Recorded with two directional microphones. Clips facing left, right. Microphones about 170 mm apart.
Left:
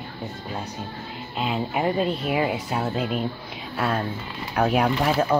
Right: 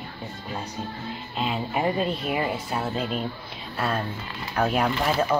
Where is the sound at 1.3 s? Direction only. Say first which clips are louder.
Left 2 dB; 5° left (ahead or behind).